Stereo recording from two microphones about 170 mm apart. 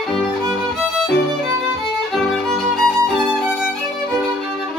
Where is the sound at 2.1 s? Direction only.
Centre (ahead or behind).